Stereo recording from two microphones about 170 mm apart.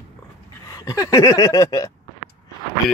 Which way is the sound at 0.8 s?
20° left (ahead or behind).